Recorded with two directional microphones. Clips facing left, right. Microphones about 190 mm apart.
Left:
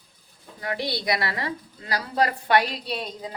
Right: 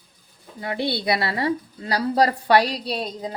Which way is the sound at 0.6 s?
25° right (ahead or behind).